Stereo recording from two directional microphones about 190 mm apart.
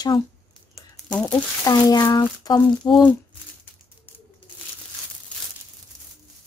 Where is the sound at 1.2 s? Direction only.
20° left (ahead or behind).